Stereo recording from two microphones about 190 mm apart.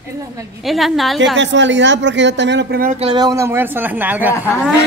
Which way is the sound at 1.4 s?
70° right (ahead or behind).